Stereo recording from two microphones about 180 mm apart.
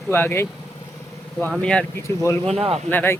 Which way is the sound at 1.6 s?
5° left (ahead or behind).